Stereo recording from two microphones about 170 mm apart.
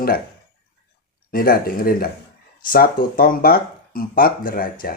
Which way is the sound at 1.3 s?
60° left (ahead or behind).